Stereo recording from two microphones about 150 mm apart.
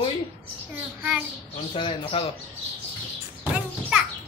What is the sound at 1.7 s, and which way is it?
Speech, 35° left (ahead or behind).